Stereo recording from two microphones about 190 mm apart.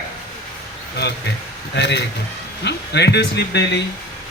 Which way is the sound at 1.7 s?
65° left (ahead or behind).